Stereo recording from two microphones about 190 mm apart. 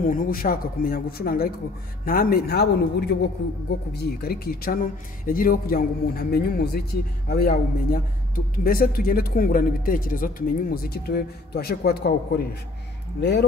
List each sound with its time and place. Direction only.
0.0 s speech: 45° left (ahead or behind); by 13.5 s 65° left (ahead or behind)